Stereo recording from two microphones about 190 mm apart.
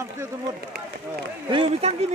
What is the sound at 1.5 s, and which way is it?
Speech, 30° right (ahead or behind).